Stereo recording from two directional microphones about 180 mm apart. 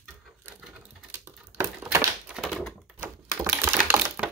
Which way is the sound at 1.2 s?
15° right (ahead or behind).